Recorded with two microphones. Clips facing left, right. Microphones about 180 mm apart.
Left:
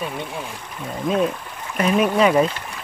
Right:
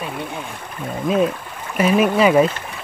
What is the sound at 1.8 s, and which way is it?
Speech, 5° right (ahead or behind).